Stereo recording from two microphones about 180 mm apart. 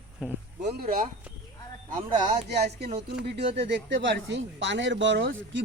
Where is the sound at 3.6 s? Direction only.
80° right.